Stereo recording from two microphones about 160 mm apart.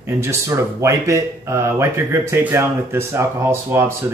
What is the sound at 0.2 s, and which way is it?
Speech, 15° right (ahead or behind).